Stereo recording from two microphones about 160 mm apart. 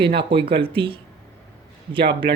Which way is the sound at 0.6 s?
35° right (ahead or behind).